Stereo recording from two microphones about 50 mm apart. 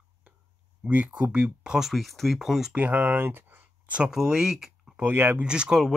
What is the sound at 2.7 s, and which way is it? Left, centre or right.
Speech, right.